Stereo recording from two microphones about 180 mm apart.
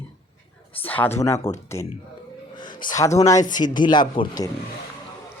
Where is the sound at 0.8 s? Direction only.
10° left (ahead or behind).